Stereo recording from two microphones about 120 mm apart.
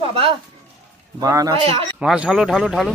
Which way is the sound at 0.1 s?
50° right (ahead or behind).